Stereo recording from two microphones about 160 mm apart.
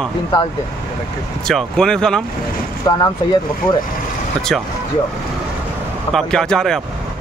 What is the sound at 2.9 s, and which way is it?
Speech, 25° left (ahead or behind).